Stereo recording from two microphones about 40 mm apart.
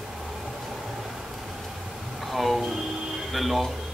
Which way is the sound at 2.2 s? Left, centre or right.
Centre.